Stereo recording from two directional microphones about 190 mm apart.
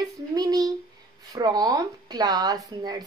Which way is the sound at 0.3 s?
20° right (ahead or behind).